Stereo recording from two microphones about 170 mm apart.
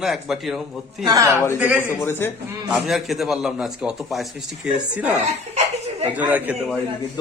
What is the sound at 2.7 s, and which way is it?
A man's voice, centre (ahead or behind).